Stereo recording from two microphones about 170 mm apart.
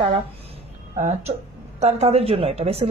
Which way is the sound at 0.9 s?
45° right (ahead or behind).